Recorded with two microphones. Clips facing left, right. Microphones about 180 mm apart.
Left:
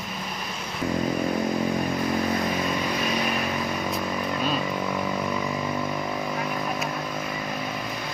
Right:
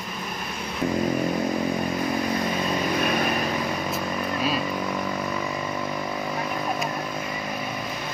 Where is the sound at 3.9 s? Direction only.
5° right (ahead or behind).